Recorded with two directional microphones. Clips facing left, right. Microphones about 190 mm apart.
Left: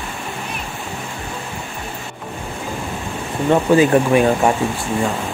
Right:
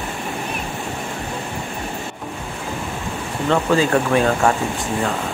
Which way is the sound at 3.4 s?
15° left (ahead or behind).